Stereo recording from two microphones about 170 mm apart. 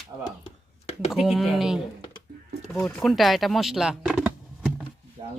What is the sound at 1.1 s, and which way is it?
Speech, centre (ahead or behind).